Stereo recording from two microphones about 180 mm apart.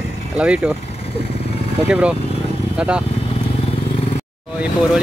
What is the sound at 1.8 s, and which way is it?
Speech, 5° right (ahead or behind).